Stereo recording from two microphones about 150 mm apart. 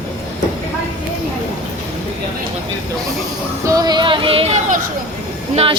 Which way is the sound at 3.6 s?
25° right (ahead or behind).